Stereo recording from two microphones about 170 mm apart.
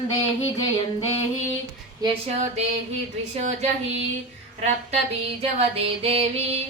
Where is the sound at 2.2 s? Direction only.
40° right (ahead or behind).